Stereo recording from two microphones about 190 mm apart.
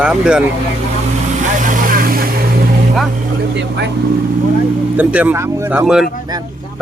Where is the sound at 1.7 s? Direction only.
45° right (ahead or behind).